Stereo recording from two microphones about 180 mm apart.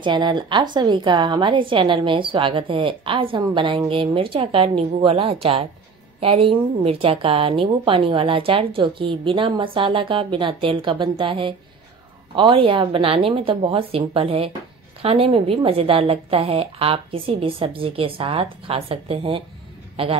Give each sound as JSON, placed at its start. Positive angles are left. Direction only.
{"t": 0.0, "sound": "a woman's voice", "side_deg": -25}